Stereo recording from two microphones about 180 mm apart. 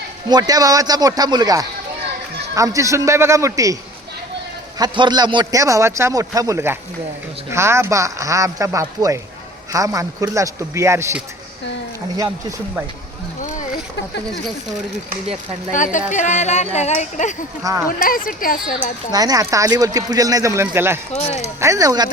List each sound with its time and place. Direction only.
0.3 s a man's voice: 20° right (ahead or behind)
4.8 s a man's voice: 25° right (ahead or behind)
15.7 s speech: 45° left (ahead or behind)
17.6 s a man's voice: 20° right (ahead or behind)
17.8 s speech: 50° left (ahead or behind)
19.1 s a man's voice: 20° right (ahead or behind)